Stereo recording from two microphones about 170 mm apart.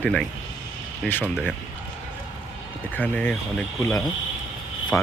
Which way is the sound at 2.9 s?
10° left (ahead or behind).